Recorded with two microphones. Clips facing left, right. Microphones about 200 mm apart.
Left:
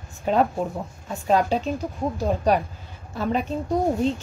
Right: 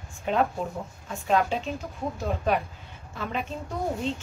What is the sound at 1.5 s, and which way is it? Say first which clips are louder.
A woman's voice: left 6 dB; 35° left (ahead or behind).